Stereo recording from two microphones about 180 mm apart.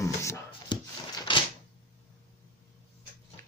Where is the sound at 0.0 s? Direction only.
15° left (ahead or behind).